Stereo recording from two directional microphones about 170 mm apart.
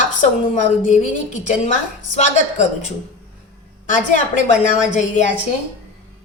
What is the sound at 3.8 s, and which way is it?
A woman's voice, 45° left (ahead or behind).